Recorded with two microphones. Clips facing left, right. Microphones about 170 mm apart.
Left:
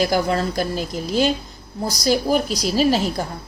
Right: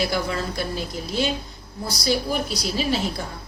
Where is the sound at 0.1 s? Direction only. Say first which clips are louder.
Left 6 dB; 40° left (ahead or behind).